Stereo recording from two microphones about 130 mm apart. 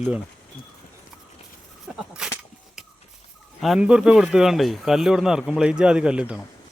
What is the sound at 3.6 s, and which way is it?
Speech, 5° right (ahead or behind).